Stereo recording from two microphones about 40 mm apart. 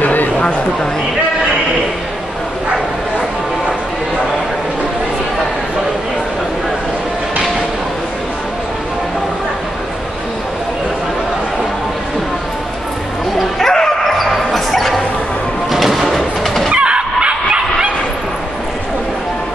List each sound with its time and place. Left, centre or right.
0.0 s a sound: left
13.6 s bow-wow: centre
15.7 s music: centre
16.7 s bow-wow: right